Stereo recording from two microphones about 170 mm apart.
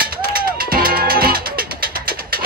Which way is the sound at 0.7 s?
60° right (ahead or behind).